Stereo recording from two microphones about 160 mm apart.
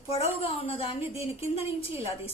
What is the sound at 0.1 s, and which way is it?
A woman's voice, 40° left (ahead or behind).